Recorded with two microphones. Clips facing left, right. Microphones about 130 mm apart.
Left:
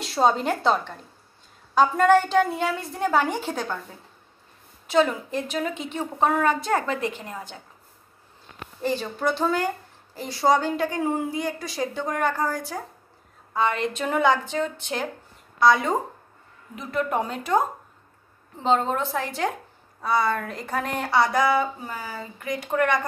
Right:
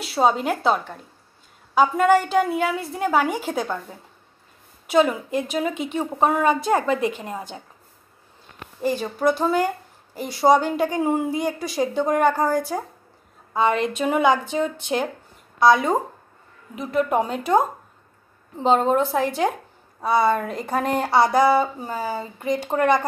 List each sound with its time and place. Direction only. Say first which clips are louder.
0.0 s a woman's voice: right 1 dB; 5° right (ahead or behind)
4.9 s a woman's voice: right 3 dB; 15° right (ahead or behind)
8.8 s a woman's voice: right 4 dB; 10° right (ahead or behind)
18.6 s a woman's voice: right 4 dB; 15° right (ahead or behind)
21.0 s speech: right 3 dB; 30° right (ahead or behind)